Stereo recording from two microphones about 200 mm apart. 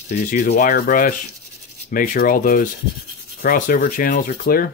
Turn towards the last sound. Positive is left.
turn(degrees=45)  # may be behind; listen again after turning